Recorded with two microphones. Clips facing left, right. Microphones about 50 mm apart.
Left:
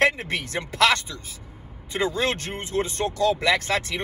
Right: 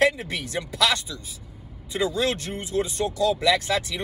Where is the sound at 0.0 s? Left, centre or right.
Left.